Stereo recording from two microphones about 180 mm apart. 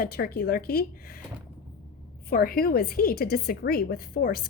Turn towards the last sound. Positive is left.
turn(degrees=55)  # may be behind; listen again after turning